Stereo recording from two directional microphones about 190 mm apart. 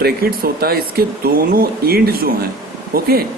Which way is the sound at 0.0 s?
55° right (ahead or behind).